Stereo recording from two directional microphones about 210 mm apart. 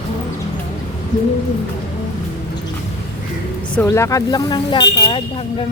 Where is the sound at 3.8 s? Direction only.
15° left (ahead or behind).